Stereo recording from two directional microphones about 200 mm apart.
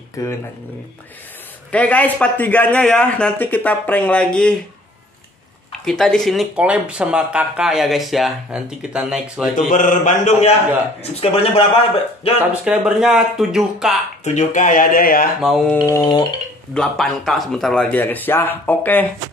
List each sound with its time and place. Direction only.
0.2 s a man's voice: 15° left (ahead or behind)
1.7 s a man's voice: 10° left (ahead or behind)
5.7 s speech: centre (ahead or behind)
9.7 s speech: 40° left (ahead or behind)
12.6 s speech: 5° right (ahead or behind)
14.2 s speech: 35° left (ahead or behind)
15.4 s speech: centre (ahead or behind)
15.8 s speech: 20° left (ahead or behind)
16.7 s a man's voice: 5° left (ahead or behind)